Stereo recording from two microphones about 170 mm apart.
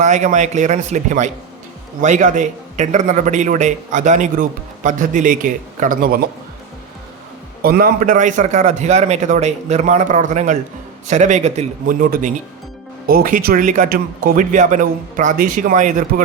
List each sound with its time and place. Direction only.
0.0 s a man's voice: 45° right (ahead or behind)
7.6 s a man's voice: 60° right (ahead or behind)